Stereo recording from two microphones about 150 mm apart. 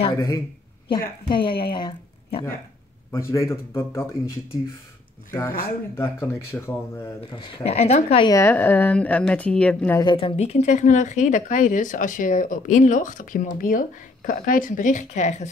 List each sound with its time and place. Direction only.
0.8 s speech: 35° left (ahead or behind)
3.1 s a woman's voice: 20° left (ahead or behind)
5.6 s a woman's voice: 20° left (ahead or behind)
7.2 s speech: 35° left (ahead or behind)
8.3 s a woman's voice: 15° left (ahead or behind)
9.9 s speech: 35° left (ahead or behind); by 15.4 s 50° left (ahead or behind)